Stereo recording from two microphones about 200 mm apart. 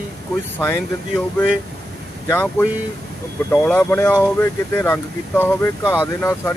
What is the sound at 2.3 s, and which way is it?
Speech, 10° left (ahead or behind).